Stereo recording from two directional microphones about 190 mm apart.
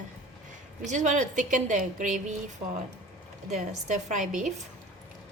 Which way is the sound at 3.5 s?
40° right (ahead or behind).